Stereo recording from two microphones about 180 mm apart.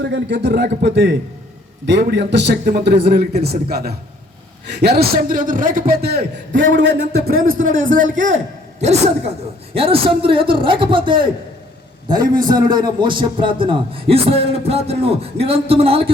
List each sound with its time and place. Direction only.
0.0 s a man's voice: 75° right (ahead or behind); by 7.5 s 60° right (ahead or behind)
7.5 s a man's voice: 90° right
8.1 s a man's voice: 45° right (ahead or behind)